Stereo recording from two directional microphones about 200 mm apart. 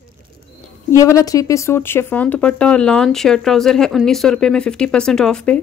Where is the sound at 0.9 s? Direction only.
15° left (ahead or behind).